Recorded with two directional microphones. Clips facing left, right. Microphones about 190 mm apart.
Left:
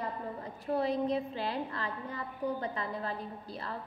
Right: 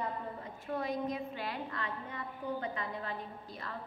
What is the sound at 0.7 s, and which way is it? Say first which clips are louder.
A woman's voice: left 5 dB; 30° left (ahead or behind).